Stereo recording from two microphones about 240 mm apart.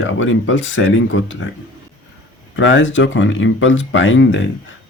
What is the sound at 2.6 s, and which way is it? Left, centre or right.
Speech, left.